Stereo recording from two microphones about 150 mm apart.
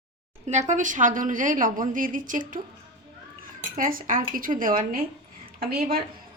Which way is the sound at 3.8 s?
70° right (ahead or behind).